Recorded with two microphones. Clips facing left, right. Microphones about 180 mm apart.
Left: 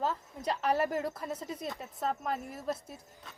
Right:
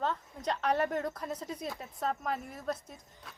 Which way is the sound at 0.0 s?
5° left (ahead or behind).